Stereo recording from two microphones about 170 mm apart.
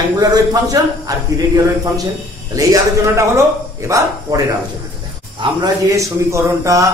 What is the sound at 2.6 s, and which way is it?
A man's voice, 20° right (ahead or behind).